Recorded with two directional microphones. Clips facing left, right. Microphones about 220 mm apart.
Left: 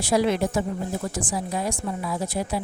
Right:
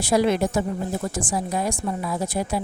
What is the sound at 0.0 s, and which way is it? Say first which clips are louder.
A woman's voice: right 2 dB; 45° right (ahead or behind).